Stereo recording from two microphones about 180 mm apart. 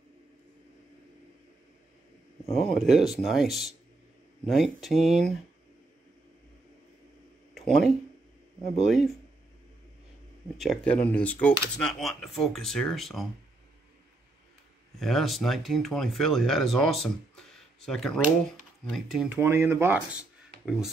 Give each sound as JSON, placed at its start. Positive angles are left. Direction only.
{"t": 2.5, "sound": "speech", "side_deg": 0}
{"t": 7.5, "sound": "a sound", "side_deg": 0}
{"t": 8.8, "sound": "speech", "side_deg": 0}
{"t": 10.6, "sound": "speech", "side_deg": 5}
{"t": 15.0, "sound": "speech", "side_deg": 0}
{"t": 19.2, "sound": "speech", "side_deg": -10}